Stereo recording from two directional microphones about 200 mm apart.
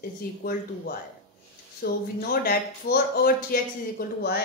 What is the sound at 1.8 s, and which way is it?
Speech, 50° left (ahead or behind).